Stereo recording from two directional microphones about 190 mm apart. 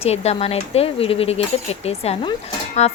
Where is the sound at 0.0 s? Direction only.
35° left (ahead or behind).